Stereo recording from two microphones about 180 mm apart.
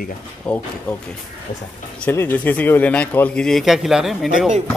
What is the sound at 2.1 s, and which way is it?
Speech, 10° left (ahead or behind).